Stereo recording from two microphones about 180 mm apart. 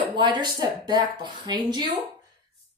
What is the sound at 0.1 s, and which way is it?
Speech, 25° right (ahead or behind).